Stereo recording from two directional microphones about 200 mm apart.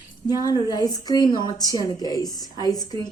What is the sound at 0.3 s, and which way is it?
A woman's voice, 20° left (ahead or behind).